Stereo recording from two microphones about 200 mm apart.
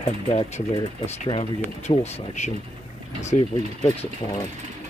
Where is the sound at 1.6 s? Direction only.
35° left (ahead or behind).